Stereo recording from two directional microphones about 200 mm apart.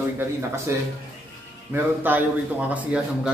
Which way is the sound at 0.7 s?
15° right (ahead or behind).